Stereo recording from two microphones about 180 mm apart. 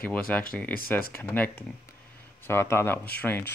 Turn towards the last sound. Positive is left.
turn(degrees=10)  # may be behind; listen again after turning